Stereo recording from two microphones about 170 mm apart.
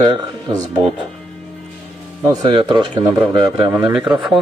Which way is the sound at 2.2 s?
25° right (ahead or behind).